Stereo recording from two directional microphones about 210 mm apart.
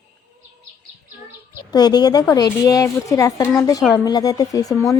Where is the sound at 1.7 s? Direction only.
20° left (ahead or behind).